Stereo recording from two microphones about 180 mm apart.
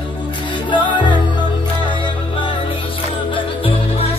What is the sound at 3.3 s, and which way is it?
Music, 30° left (ahead or behind).